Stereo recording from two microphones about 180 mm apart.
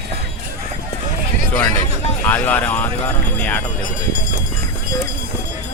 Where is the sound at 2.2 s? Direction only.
10° left (ahead or behind).